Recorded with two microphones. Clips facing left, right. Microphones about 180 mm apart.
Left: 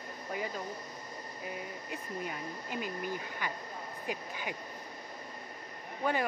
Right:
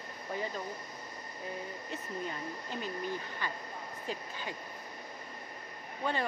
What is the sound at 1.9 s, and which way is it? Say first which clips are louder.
Speech: even; 10° left (ahead or behind).